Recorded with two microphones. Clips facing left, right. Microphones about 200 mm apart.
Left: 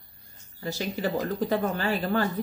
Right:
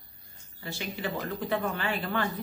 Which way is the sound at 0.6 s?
40° left (ahead or behind).